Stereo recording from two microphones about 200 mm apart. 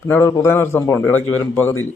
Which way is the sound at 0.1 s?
15° left (ahead or behind).